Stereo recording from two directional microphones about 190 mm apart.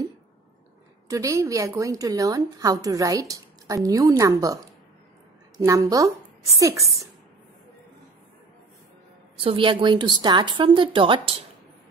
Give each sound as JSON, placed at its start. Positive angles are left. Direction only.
{"t": 1.0, "sound": "a woman's voice", "side_deg": -15}
{"t": 5.6, "sound": "a woman's voice", "side_deg": -15}
{"t": 9.4, "sound": "a woman's voice", "side_deg": -30}